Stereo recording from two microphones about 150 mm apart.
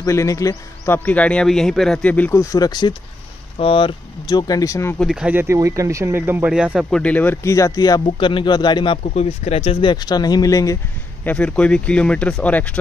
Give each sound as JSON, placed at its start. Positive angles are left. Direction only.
{"t": 0.0, "sound": "a man's voice", "side_deg": 20}
{"t": 2.5, "sound": "speech", "side_deg": 25}
{"t": 4.9, "sound": "speech", "side_deg": 0}
{"t": 6.9, "sound": "speech", "side_deg": 10}
{"t": 9.1, "sound": "speech", "side_deg": 45}
{"t": 11.2, "sound": "a man's voice", "side_deg": 5}